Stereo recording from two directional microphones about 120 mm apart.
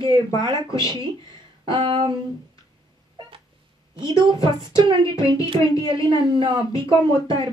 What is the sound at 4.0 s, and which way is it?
Speech, 40° right (ahead or behind).